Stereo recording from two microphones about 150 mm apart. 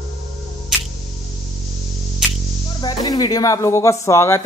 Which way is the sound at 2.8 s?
25° left (ahead or behind).